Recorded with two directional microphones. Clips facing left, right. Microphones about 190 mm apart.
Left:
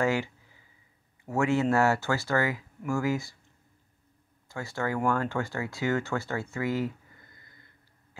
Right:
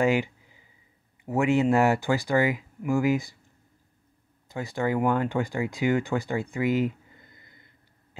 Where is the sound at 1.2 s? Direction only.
15° right (ahead or behind).